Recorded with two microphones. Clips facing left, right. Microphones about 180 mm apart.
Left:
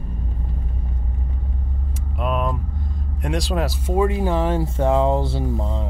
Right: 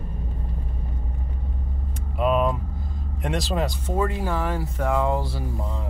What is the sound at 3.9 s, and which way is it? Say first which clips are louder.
Speech: left 7 dB; 20° left (ahead or behind).